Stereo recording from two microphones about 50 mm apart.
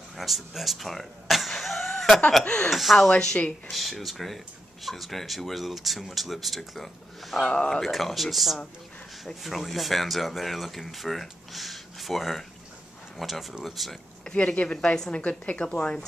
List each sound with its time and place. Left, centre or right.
0.2 s speech: centre
2.4 s speech: centre
2.7 s speech: centre
7.8 s speech: centre
14.2 s a woman's voice: left